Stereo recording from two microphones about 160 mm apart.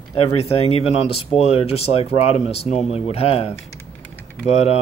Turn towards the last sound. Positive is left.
turn(degrees=40)  # may be behind; listen again after turning